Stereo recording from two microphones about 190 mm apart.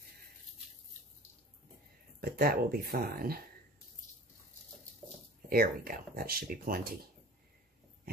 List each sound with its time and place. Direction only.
2.1 s speech: 55° right (ahead or behind)
5.5 s speech: 50° right (ahead or behind)